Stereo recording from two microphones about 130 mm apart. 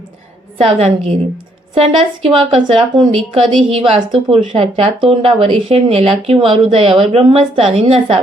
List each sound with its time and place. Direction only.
0.6 s a woman's voice: 50° right (ahead or behind)